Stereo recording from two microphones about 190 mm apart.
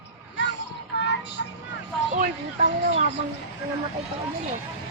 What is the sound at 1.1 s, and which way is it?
Child singing, 65° left (ahead or behind).